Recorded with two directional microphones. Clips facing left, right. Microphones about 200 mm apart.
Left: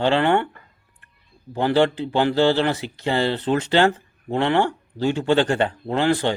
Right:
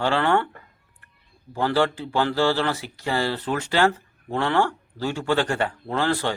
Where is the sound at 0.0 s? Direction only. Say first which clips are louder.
Left 3 dB; 20° left (ahead or behind).